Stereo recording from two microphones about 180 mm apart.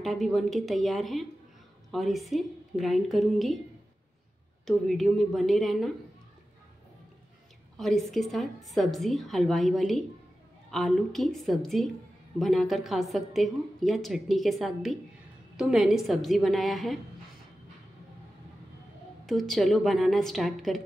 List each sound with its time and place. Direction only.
0.0 s a woman's voice: centre (ahead or behind)
4.6 s a woman's voice: centre (ahead or behind)
7.7 s a woman's voice: centre (ahead or behind)
19.2 s a woman's voice: centre (ahead or behind)